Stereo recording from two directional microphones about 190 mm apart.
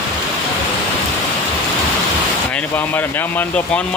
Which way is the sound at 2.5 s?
10° left (ahead or behind).